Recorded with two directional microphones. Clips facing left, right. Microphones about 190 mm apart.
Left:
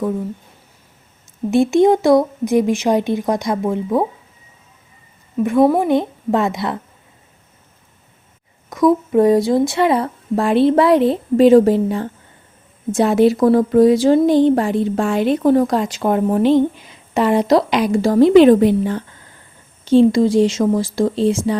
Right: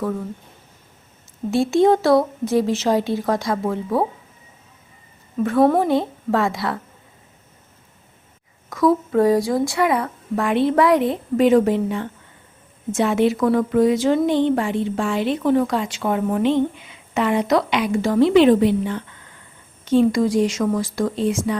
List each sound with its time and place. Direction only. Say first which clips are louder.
1.5 s speech: left 3 dB; 20° left (ahead or behind)
5.4 s speech: left 2 dB; 15° left (ahead or behind)
8.7 s speech: left 3 dB; 20° left (ahead or behind)